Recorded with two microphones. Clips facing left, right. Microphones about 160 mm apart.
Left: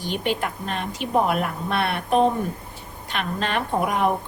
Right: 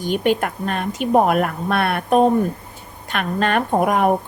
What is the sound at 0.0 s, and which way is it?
Speech, 50° right (ahead or behind).